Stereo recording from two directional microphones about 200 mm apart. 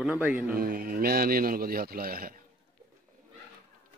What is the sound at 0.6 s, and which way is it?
A man's voice, 45° right (ahead or behind).